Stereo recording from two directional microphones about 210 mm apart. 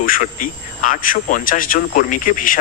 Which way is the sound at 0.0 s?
40° left (ahead or behind).